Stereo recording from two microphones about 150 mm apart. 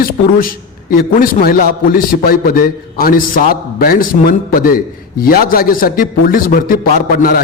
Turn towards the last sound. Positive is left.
turn(degrees=75)  # may be behind; listen again after turning